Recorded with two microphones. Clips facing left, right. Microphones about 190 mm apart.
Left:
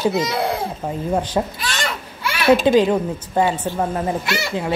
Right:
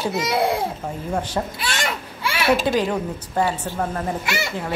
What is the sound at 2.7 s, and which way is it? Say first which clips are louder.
Speech: left 7 dB; 20° left (ahead or behind).